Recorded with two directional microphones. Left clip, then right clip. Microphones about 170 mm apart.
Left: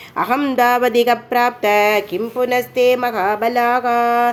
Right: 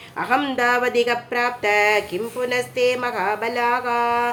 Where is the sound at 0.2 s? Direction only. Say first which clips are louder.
Left 4 dB; 30° left (ahead or behind).